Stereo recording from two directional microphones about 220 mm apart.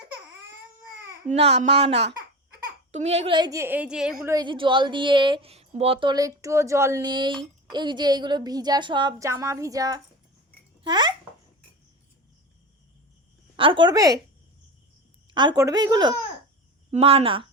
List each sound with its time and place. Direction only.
1.3 s a woman's voice: 30° right (ahead or behind)
13.6 s a woman's voice: 25° right (ahead or behind)
15.3 s a woman's voice: 20° right (ahead or behind)